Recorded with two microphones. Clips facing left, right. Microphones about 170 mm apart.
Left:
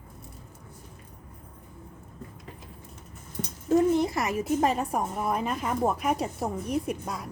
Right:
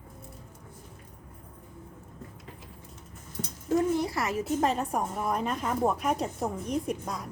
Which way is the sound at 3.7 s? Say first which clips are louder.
Left 4 dB; 20° left (ahead or behind).